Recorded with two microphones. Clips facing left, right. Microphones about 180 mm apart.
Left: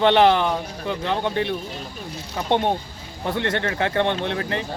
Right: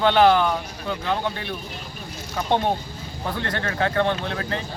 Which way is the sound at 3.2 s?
25° left (ahead or behind).